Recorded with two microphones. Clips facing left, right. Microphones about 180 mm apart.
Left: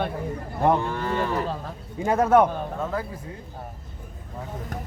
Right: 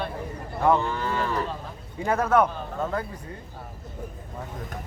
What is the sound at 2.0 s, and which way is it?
Speech, 20° left (ahead or behind).